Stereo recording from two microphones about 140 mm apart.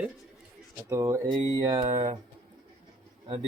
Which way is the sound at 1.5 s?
35° right (ahead or behind).